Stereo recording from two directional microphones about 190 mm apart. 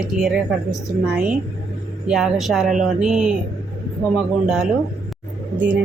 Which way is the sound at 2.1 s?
Centre (ahead or behind).